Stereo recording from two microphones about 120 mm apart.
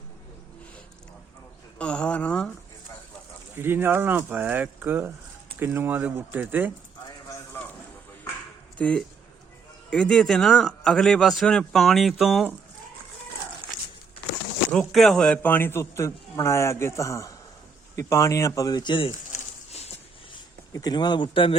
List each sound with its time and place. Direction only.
1.8 s speech: 10° left (ahead or behind)
3.6 s speech: 20° right (ahead or behind)
8.8 s a man's voice: 10° left (ahead or behind)
14.7 s a man's voice: 5° left (ahead or behind); by 19.1 s 45° left (ahead or behind)
19.3 s a sound: 65° left (ahead or behind)
20.7 s speech: 35° left (ahead or behind)